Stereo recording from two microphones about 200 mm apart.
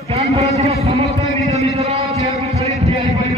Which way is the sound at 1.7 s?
30° right (ahead or behind).